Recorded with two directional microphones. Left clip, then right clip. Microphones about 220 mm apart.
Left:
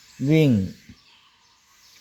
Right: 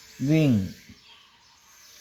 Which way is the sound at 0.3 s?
50° left (ahead or behind).